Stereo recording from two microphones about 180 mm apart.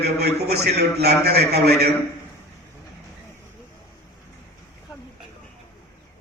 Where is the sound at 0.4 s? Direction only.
65° right (ahead or behind).